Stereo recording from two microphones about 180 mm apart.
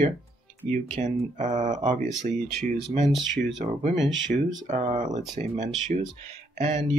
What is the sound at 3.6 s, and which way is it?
Speech, 40° right (ahead or behind).